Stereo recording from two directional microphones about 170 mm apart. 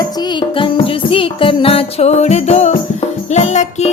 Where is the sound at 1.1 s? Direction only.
30° left (ahead or behind).